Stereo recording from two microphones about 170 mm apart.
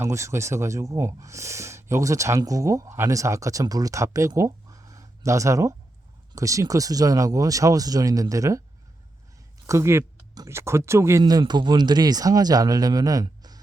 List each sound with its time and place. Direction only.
0.0 s speech: 15° right (ahead or behind)
9.6 s speech: 15° right (ahead or behind)